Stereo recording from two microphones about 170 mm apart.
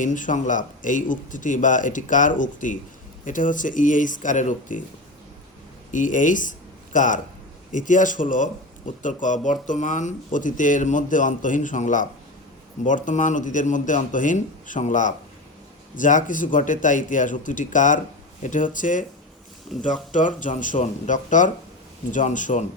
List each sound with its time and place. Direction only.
0.0 s speech: 50° left (ahead or behind)
5.9 s speech: 50° left (ahead or behind)